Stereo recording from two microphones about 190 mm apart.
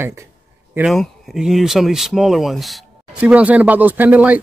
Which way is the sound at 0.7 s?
Centre (ahead or behind).